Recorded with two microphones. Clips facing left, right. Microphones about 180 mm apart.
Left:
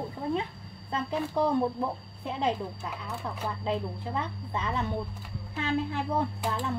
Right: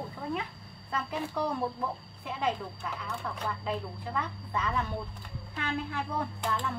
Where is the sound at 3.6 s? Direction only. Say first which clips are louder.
Left 4 dB; 25° left (ahead or behind).